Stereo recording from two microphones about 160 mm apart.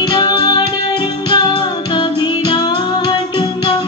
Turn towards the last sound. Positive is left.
turn(degrees=30)  # may be behind; listen again after turning